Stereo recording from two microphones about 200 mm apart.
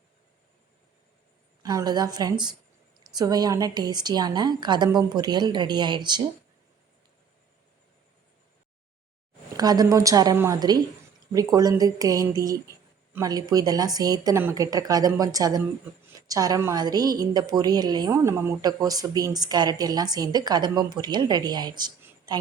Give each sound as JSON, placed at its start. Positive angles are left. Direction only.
{"t": 1.6, "sound": "a woman's voice", "side_deg": -20}
{"t": 9.6, "sound": "a woman's voice", "side_deg": -20}